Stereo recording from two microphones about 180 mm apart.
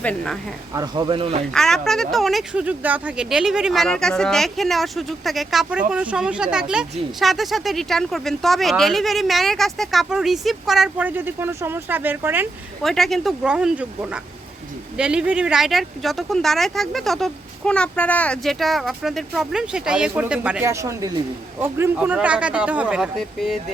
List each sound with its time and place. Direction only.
0.0 s speech: 5° left (ahead or behind)
0.7 s speech: 20° right (ahead or behind)
1.5 s speech: centre (ahead or behind)
12.8 s speech: centre (ahead or behind)